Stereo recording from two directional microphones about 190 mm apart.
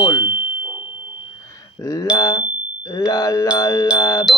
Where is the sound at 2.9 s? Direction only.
20° left (ahead or behind).